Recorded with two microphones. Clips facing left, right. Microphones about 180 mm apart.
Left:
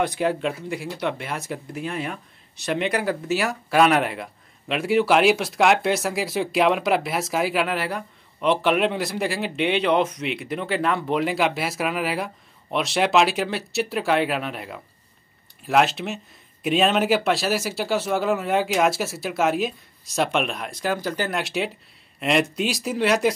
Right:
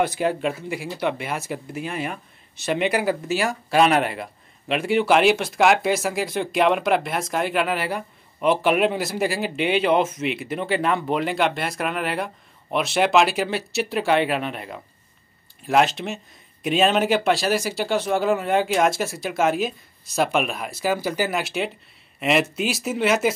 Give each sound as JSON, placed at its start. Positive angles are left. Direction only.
{"t": 0.0, "sound": "speech", "side_deg": 0}